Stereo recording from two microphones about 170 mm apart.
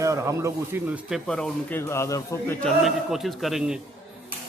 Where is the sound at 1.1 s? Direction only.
5° left (ahead or behind).